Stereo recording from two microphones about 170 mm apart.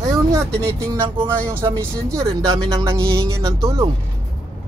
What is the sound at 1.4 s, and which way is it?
Speech, 15° right (ahead or behind).